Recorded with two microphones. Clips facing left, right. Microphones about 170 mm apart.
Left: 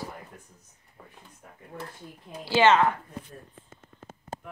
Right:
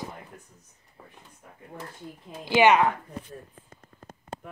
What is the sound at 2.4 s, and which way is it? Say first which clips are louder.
Speech: right 1 dB; 15° right (ahead or behind).